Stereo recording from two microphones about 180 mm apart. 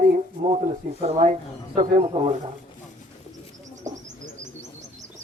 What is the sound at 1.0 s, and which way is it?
Speech, 35° right (ahead or behind).